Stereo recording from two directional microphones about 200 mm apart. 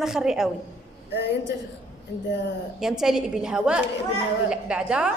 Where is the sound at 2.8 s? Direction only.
Centre (ahead or behind).